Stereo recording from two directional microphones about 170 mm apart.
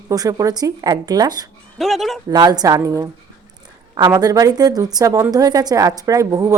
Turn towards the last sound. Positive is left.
turn(degrees=-20)  # may be behind; listen again after turning